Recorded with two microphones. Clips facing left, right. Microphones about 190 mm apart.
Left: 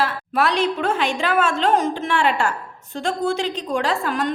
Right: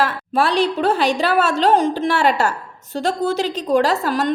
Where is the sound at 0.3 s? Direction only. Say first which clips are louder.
Right 3 dB; 35° right (ahead or behind).